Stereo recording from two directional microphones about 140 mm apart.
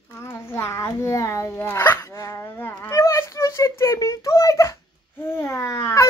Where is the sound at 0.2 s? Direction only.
20° left (ahead or behind).